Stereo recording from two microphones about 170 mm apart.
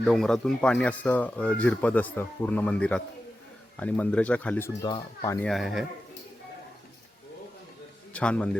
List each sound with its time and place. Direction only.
0.0 s speech: centre (ahead or behind)
4.8 s speech: 25° left (ahead or behind)
5.4 s speech: centre (ahead or behind)
8.1 s speech: 5° left (ahead or behind)